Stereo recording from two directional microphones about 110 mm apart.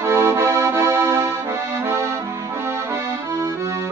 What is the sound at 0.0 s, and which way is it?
Accordion, 25° right (ahead or behind).